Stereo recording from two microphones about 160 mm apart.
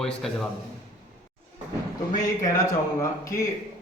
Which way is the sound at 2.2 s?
20° left (ahead or behind).